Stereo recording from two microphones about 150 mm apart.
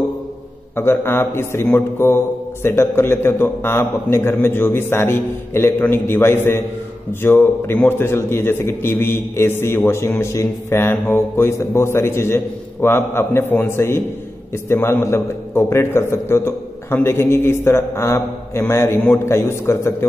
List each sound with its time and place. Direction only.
0.7 s a man's voice: 15° left (ahead or behind)